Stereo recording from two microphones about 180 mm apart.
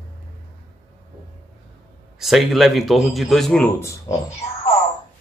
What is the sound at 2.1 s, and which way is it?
A man's voice, centre (ahead or behind).